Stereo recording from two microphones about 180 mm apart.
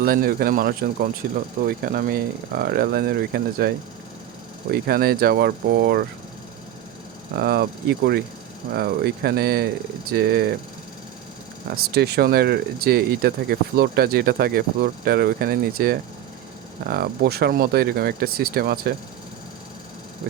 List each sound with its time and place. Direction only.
0.0 s speech: 55° right (ahead or behind)
4.7 s speech: 60° right (ahead or behind)
7.3 s speech: 60° right (ahead or behind)
11.7 s speech: 60° right (ahead or behind)